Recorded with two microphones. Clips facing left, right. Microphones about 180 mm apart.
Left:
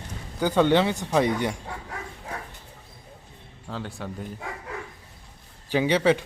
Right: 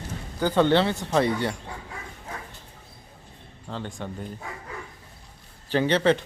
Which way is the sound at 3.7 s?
5° left (ahead or behind).